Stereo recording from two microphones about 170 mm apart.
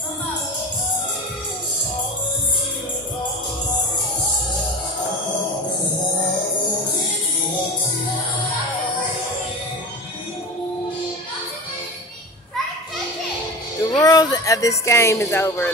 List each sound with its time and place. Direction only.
13.9 s speech: 20° left (ahead or behind)